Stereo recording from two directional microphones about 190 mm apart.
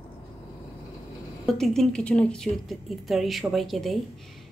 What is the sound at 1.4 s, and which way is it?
A woman's voice, centre (ahead or behind).